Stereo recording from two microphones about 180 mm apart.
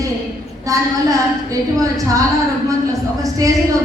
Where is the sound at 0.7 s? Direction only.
20° right (ahead or behind).